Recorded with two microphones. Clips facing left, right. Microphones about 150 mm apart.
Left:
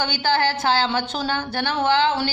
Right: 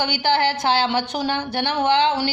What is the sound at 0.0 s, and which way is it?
A woman's voice, 15° right (ahead or behind).